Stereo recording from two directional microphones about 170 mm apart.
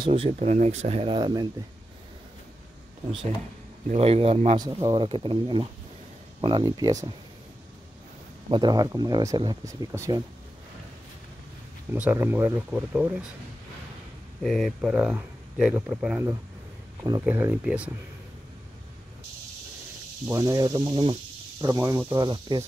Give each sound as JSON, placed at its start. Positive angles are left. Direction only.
{"t": 0.0, "sound": "speech", "side_deg": -35}
{"t": 3.9, "sound": "speech", "side_deg": -35}
{"t": 4.6, "sound": "speech", "side_deg": -20}
{"t": 8.5, "sound": "speech", "side_deg": -25}
{"t": 11.9, "sound": "speech", "side_deg": -10}
{"t": 14.4, "sound": "speech", "side_deg": 0}
{"t": 20.2, "sound": "speech", "side_deg": -20}